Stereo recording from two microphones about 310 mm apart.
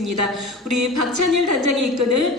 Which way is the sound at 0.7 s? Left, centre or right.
Right.